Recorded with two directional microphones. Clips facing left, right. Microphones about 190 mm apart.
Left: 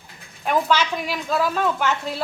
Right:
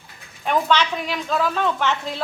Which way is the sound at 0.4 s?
5° left (ahead or behind).